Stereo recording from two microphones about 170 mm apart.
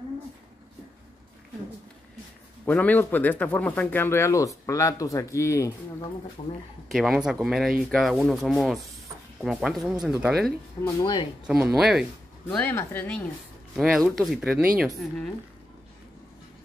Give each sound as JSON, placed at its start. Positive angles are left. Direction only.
{"t": 2.6, "sound": "speech", "side_deg": 10}
{"t": 6.4, "sound": "speech", "side_deg": 40}
{"t": 6.9, "sound": "speech", "side_deg": 0}
{"t": 10.8, "sound": "speech", "side_deg": 35}
{"t": 11.4, "sound": "speech", "side_deg": -5}
{"t": 12.5, "sound": "speech", "side_deg": 10}
{"t": 13.7, "sound": "speech", "side_deg": 0}